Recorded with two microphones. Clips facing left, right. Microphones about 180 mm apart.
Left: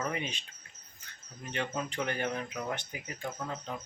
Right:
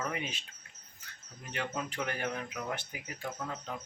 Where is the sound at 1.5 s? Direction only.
5° right (ahead or behind).